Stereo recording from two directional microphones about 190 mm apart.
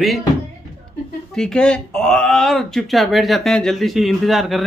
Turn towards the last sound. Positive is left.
turn(degrees=0)  # may be behind; listen again after turning